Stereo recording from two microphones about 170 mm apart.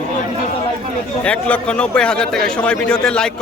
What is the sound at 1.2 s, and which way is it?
A man's voice, 5° left (ahead or behind).